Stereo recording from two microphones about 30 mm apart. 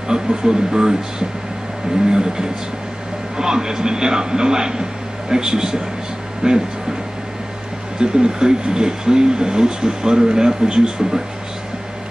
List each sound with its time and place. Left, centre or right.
0.1 s speech: right
2.0 s speech: right
8.0 s speech: right